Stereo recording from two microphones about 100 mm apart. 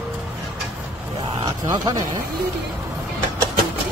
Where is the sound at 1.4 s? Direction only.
35° right (ahead or behind).